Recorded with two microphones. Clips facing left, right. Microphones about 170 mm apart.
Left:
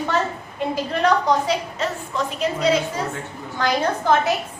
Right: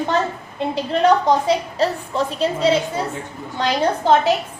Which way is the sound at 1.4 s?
30° right (ahead or behind).